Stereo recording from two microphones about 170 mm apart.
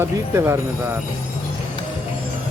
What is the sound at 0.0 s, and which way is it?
Speech, 15° right (ahead or behind).